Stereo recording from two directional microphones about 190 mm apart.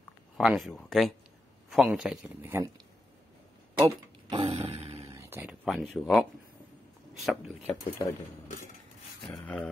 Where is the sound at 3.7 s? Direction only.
25° right (ahead or behind).